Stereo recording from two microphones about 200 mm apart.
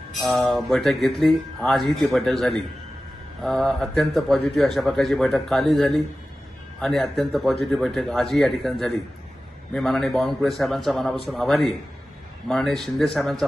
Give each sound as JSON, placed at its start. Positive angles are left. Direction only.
{"t": 0.2, "sound": "a man's voice", "side_deg": 0}